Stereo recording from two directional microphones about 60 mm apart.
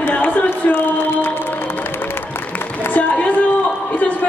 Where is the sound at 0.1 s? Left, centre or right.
Left.